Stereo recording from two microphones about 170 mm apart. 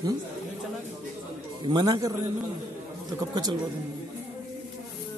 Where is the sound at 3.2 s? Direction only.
25° right (ahead or behind).